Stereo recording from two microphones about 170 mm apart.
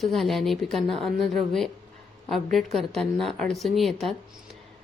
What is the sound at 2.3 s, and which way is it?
Speech, centre (ahead or behind).